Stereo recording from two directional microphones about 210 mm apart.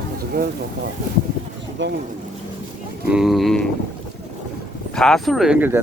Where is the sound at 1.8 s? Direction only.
60° right (ahead or behind).